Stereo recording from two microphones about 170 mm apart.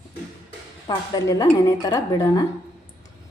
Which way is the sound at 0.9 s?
25° left (ahead or behind).